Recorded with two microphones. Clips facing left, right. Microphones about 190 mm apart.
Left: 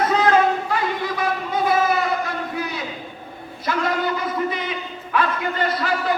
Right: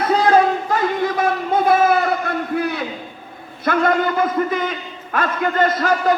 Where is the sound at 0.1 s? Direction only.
35° right (ahead or behind).